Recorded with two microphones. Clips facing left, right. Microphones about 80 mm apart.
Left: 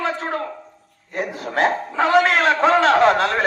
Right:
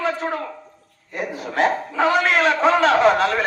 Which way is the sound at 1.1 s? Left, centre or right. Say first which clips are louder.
Left 1 dB; left.